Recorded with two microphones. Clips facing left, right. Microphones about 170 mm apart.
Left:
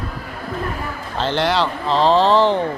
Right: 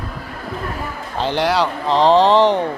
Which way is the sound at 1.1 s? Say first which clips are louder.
Right 1 dB; 15° right (ahead or behind).